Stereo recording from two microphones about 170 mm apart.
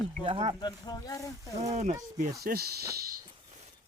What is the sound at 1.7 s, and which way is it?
Speech, 45° right (ahead or behind).